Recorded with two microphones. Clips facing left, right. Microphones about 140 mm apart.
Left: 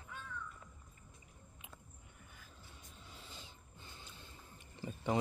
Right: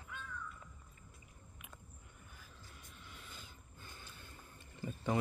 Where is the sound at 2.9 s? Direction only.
30° left (ahead or behind).